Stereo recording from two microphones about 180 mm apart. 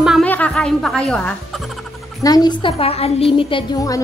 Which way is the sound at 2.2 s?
20° left (ahead or behind).